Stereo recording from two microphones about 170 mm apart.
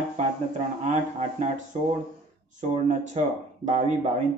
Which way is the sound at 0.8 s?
40° right (ahead or behind).